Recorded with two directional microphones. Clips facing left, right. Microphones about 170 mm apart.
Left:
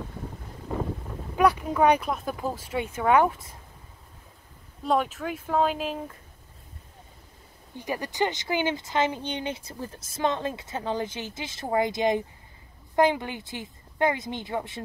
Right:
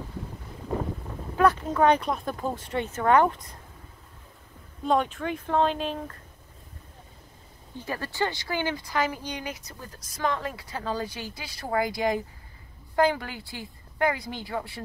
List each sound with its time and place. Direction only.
1.3 s speech: 10° left (ahead or behind)
4.8 s speech: 5° left (ahead or behind)
7.7 s speech: 15° left (ahead or behind)